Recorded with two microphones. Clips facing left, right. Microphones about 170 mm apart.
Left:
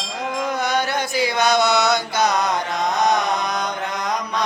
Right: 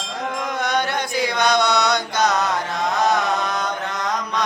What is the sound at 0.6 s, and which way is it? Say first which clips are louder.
Chant: left 1 dB; 5° left (ahead or behind).